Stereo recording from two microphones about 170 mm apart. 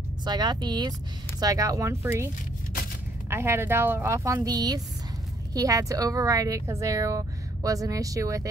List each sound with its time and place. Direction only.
0.2 s speech: 25° right (ahead or behind)
3.3 s speech: 15° right (ahead or behind)